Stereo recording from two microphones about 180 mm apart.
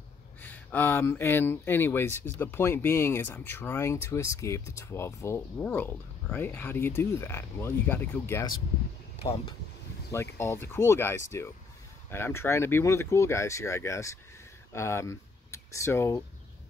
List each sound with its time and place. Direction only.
0.4 s speech: 10° left (ahead or behind)
10.1 s speech: 15° left (ahead or behind)